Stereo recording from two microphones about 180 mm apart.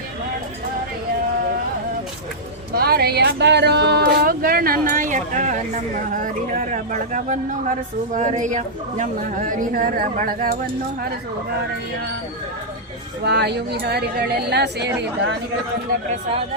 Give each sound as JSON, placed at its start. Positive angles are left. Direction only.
{"t": 2.7, "sound": "a woman's voice", "side_deg": -60}
{"t": 13.2, "sound": "speech", "side_deg": -70}